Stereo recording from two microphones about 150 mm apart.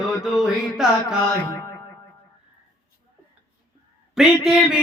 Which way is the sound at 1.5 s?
20° left (ahead or behind).